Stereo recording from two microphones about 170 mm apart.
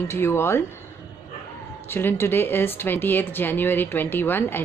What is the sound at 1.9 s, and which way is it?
Speech, 15° left (ahead or behind).